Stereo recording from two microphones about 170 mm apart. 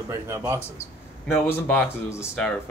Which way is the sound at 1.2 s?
10° left (ahead or behind).